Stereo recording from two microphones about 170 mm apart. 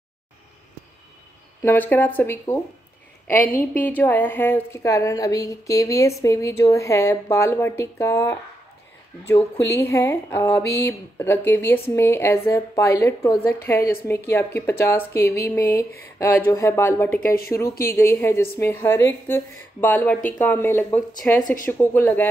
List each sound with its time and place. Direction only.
1.6 s a woman's voice: 10° left (ahead or behind)
17.2 s speech: 60° left (ahead or behind)
17.6 s a woman's voice: 15° left (ahead or behind)